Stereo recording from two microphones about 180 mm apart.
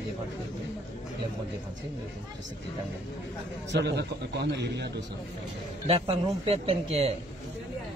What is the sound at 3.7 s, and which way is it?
A man's voice, 70° right (ahead or behind).